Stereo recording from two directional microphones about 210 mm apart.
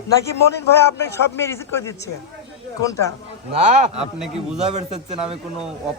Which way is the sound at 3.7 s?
35° right (ahead or behind).